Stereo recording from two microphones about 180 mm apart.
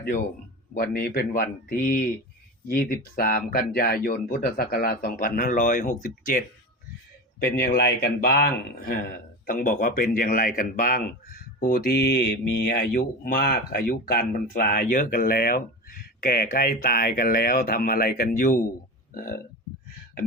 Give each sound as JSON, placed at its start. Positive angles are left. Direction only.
{"t": 0.7, "sound": "a man's voice", "side_deg": 60}
{"t": 7.3, "sound": "a man's voice", "side_deg": 60}
{"t": 19.1, "sound": "burping", "side_deg": 50}